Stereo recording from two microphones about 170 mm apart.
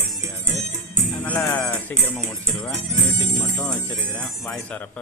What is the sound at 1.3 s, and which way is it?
Speech, 10° left (ahead or behind).